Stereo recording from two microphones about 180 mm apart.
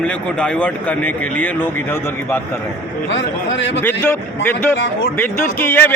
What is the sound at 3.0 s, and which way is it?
Speech, 90° left.